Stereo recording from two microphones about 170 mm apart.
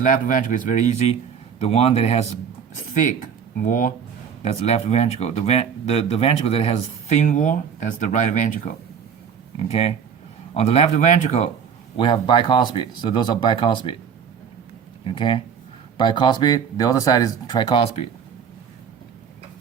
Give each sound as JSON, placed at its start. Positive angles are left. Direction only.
{"t": 0.0, "sound": "a man's voice", "side_deg": 50}
{"t": 2.9, "sound": "speech", "side_deg": 50}
{"t": 4.4, "sound": "speech", "side_deg": 40}
{"t": 9.6, "sound": "speech", "side_deg": 35}
{"t": 11.9, "sound": "speech", "side_deg": 30}
{"t": 15.0, "sound": "speech", "side_deg": 30}